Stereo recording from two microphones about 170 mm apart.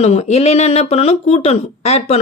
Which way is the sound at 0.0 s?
40° left (ahead or behind).